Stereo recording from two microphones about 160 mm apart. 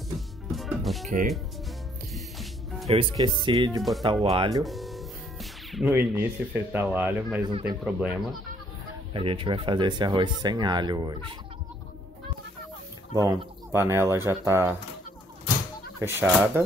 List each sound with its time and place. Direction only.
0.5 s music: centre (ahead or behind)
2.1 s music: centre (ahead or behind)
2.9 s speech: 30° right (ahead or behind)
4.2 s speech: 40° right (ahead or behind)
4.6 s music: centre (ahead or behind)
5.9 s speech: 10° right (ahead or behind)
7.4 s speech: 30° right (ahead or behind)
7.8 s speech: 5° right (ahead or behind)
9.1 s speech: 35° right (ahead or behind)
13.1 s speech: 20° right (ahead or behind)
16.0 s speech: 15° right (ahead or behind)